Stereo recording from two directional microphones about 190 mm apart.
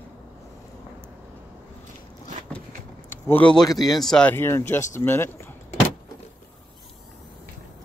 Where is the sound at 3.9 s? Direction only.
5° left (ahead or behind).